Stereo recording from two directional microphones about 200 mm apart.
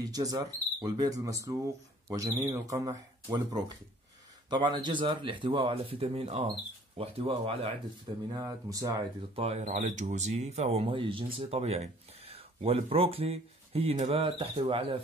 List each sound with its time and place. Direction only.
0.0 s speech: 20° right (ahead or behind)
8.3 s speech: 20° right (ahead or behind)
9.3 s speech: 30° right (ahead or behind)